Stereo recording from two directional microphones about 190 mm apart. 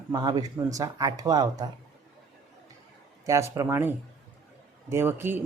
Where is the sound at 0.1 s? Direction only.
20° right (ahead or behind).